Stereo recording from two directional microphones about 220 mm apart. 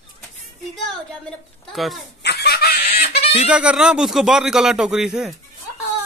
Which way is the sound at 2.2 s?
45° left (ahead or behind).